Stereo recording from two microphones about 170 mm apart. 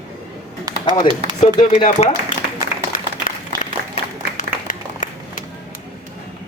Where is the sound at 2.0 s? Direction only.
40° left (ahead or behind).